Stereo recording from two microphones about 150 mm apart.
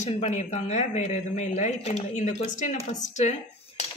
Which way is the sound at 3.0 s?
50° left (ahead or behind).